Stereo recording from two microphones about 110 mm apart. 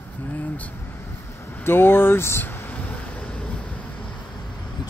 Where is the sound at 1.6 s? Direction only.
20° left (ahead or behind).